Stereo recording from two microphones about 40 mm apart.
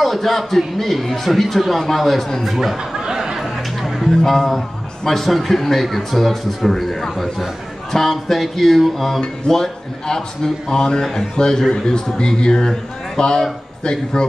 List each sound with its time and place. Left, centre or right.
0.0 s a man's voice: centre
2.5 s speech: centre
3.0 s a sound: centre
3.3 s music: centre
4.2 s a man's voice: centre
9.2 s a man's voice: centre